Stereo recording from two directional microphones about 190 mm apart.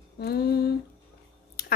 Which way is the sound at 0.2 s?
55° left (ahead or behind).